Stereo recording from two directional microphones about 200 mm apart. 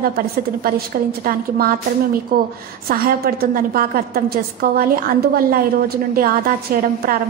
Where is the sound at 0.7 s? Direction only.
50° right (ahead or behind).